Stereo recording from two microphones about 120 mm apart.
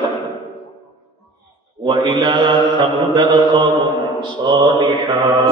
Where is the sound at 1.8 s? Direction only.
45° right (ahead or behind).